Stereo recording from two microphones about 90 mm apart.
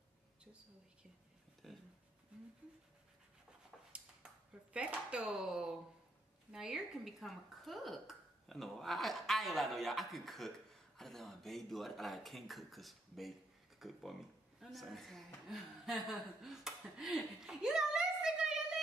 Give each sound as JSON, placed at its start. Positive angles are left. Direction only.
{"t": 1.6, "sound": "speech", "side_deg": 0}
{"t": 2.3, "sound": "speech", "side_deg": -10}
{"t": 3.7, "sound": "speech", "side_deg": 5}
{"t": 4.7, "sound": "speech", "side_deg": -15}